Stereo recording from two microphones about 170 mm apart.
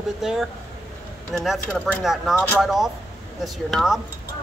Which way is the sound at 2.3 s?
10° left (ahead or behind).